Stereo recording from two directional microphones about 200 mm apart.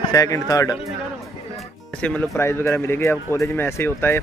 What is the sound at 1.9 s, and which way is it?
Speech, 5° left (ahead or behind).